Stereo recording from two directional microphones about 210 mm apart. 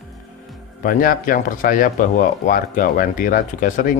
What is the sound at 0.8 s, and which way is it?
Speech, 40° left (ahead or behind).